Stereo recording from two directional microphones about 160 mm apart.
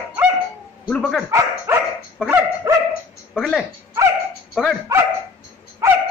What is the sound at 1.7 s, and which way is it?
Dog, 15° right (ahead or behind).